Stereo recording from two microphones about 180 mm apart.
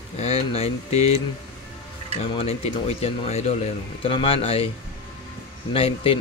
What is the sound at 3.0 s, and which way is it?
Speech, 35° left (ahead or behind).